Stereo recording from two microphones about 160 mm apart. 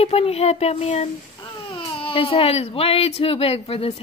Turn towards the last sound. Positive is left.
turn(degrees=40)  # may be behind; listen again after turning